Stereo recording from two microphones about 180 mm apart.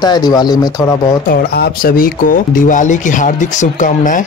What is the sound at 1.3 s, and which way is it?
Speech, 60° left (ahead or behind).